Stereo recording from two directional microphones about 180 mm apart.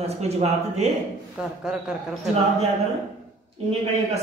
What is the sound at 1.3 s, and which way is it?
Speech, 5° right (ahead or behind).